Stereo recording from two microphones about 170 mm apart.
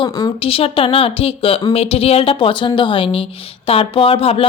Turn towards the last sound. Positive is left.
turn(degrees=35)  # may be behind; listen again after turning